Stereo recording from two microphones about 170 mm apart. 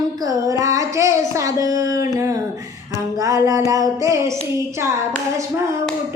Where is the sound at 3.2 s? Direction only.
20° right (ahead or behind).